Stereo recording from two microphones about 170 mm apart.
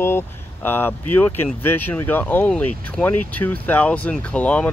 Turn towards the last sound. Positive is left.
turn(degrees=10)  # may be behind; listen again after turning